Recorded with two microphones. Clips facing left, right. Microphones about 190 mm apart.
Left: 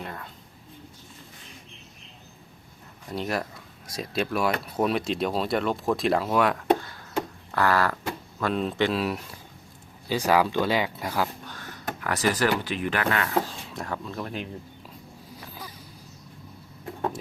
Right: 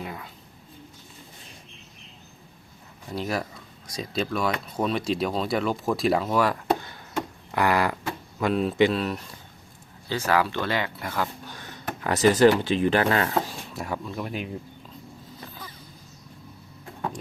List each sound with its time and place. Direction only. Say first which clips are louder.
0.0 s speech: right 1 dB; 5° right (ahead or behind)
3.1 s speech: even; centre (ahead or behind)
7.5 s speech: right 1 dB; 15° right (ahead or behind); by 9.2 s 5° left (ahead or behind)
10.1 s speech: left 2 dB; 15° left (ahead or behind)
11.4 s speech: even; 20° right (ahead or behind)
13.7 s speech: right 1 dB; 10° right (ahead or behind)